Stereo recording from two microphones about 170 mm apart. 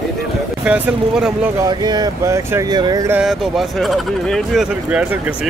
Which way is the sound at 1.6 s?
25° right (ahead or behind).